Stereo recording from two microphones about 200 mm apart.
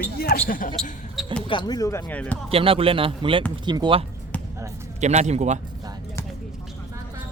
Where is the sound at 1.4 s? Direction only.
25° left (ahead or behind).